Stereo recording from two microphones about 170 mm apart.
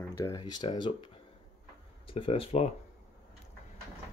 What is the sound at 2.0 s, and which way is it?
Speech, 30° left (ahead or behind).